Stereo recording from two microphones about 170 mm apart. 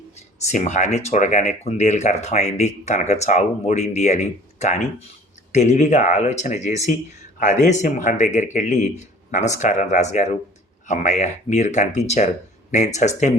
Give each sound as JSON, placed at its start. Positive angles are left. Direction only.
{"t": 0.4, "sound": "speech", "side_deg": 45}